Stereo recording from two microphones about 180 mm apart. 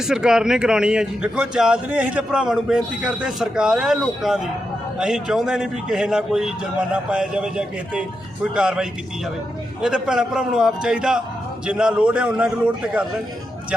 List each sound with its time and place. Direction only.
0.1 s a man's voice: 5° right (ahead or behind)